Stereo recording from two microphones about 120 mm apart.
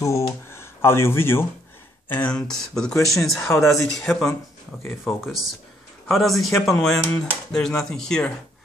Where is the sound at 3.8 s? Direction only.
25° left (ahead or behind).